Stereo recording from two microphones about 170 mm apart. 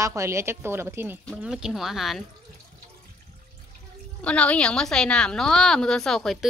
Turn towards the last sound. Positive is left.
turn(degrees=0)  # may be behind; listen again after turning